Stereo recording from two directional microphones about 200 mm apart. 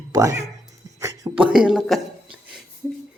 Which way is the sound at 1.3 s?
5° right (ahead or behind).